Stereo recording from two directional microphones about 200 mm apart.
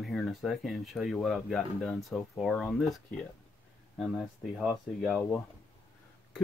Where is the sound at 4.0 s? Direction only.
Centre (ahead or behind).